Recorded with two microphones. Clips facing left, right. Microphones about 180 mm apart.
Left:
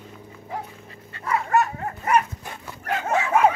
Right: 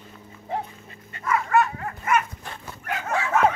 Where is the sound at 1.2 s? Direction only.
35° left (ahead or behind).